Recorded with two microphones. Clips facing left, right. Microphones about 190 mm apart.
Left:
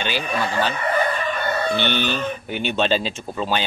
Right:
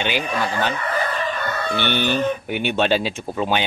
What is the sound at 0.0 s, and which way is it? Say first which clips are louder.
Speech: right 1 dB; 15° right (ahead or behind).